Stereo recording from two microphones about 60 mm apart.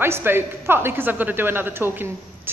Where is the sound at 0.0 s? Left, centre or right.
Right.